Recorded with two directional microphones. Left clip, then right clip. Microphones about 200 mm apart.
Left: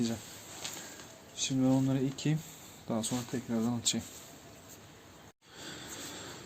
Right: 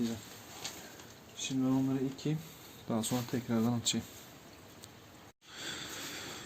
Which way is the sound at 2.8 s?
Centre (ahead or behind).